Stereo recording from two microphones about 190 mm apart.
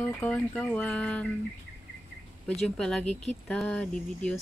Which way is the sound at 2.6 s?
5° left (ahead or behind).